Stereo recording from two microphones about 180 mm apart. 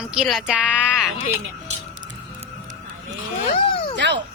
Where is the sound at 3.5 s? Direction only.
30° left (ahead or behind).